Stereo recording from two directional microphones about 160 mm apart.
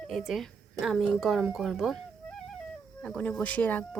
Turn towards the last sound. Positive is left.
turn(degrees=10)  # may be behind; listen again after turning